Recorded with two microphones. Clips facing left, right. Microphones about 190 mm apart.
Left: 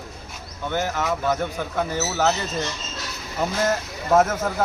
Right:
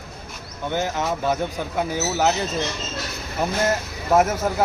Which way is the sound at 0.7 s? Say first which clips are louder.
Even; 15° right (ahead or behind).